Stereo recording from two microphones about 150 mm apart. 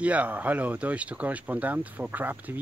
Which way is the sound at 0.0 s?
10° right (ahead or behind).